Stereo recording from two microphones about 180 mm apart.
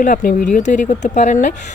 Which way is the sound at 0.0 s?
50° left (ahead or behind).